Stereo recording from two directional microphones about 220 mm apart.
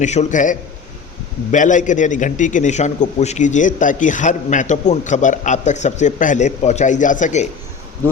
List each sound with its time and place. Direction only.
0.0 s a man's voice: 30° left (ahead or behind)